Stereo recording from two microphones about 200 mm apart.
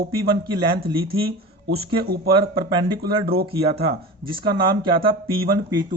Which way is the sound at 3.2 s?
50° right (ahead or behind).